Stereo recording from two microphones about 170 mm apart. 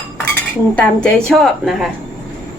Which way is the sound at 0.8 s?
5° left (ahead or behind).